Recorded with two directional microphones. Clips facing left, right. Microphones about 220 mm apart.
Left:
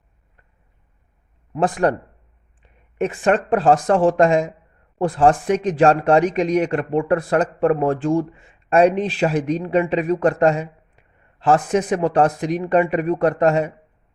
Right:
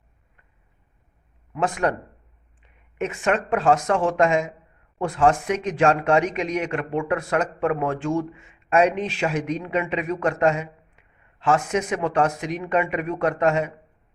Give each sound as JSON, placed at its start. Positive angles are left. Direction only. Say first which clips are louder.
{"t": 1.5, "sound": "speech", "louder": "left 5 dB", "side_deg": 35}
{"t": 3.0, "sound": "speech", "louder": "left 5 dB", "side_deg": 35}